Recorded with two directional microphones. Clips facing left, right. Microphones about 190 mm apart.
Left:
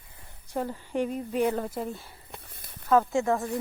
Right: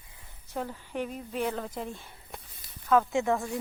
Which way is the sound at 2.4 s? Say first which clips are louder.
Left 3 dB; 60° left (ahead or behind).